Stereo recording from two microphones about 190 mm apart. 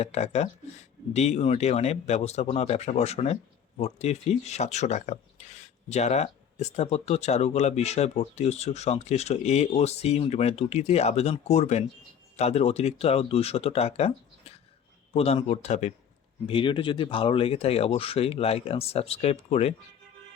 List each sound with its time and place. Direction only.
0.0 s speech: 35° left (ahead or behind)